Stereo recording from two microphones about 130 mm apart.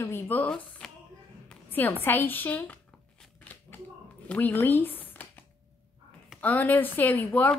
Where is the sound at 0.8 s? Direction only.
5° left (ahead or behind).